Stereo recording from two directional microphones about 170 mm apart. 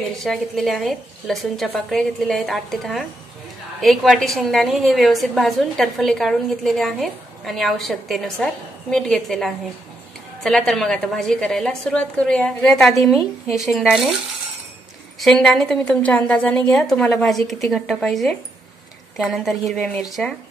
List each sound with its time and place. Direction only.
0.2 s a woman's voice: centre (ahead or behind)
15.1 s a woman's voice: centre (ahead or behind)